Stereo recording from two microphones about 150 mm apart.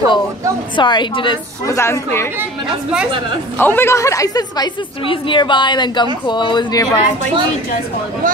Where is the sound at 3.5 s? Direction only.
10° left (ahead or behind); by 6.9 s 30° left (ahead or behind).